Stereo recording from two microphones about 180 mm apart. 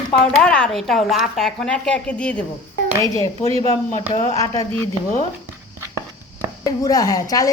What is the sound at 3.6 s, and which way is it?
A woman's voice, 20° left (ahead or behind).